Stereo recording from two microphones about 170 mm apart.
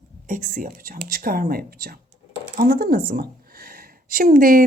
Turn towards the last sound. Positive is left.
turn(degrees=-55)  # may be behind; listen again after turning